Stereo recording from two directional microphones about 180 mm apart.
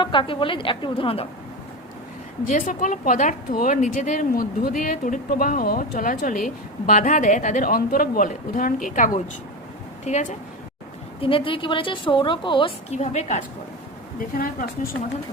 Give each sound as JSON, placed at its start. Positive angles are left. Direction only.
{"t": 0.0, "sound": "a woman's voice", "side_deg": 25}
{"t": 2.5, "sound": "a woman's voice", "side_deg": 45}
{"t": 11.2, "sound": "a woman's voice", "side_deg": 30}
{"t": 14.2, "sound": "a woman's voice", "side_deg": 50}